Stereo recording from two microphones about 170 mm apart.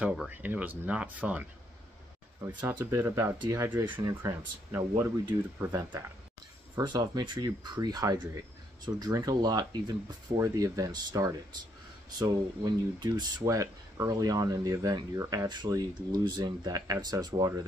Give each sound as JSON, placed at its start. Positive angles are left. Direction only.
{"t": 0.0, "sound": "speech", "side_deg": -10}